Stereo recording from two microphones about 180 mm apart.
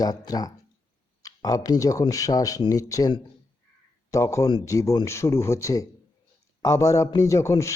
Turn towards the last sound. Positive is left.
turn(degrees=15)  # may be behind; listen again after turning